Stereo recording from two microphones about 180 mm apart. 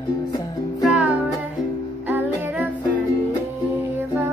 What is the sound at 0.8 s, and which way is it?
Music, 5° right (ahead or behind).